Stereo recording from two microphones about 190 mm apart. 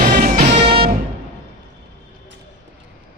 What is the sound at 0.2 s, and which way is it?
Music, 50° right (ahead or behind).